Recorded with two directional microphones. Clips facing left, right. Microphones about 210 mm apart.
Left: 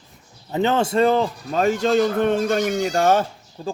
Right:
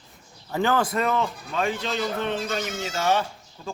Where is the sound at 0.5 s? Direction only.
25° left (ahead or behind).